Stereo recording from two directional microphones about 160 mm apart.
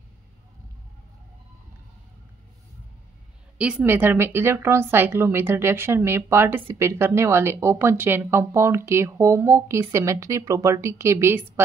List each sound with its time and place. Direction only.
3.5 s speech: 5° right (ahead or behind)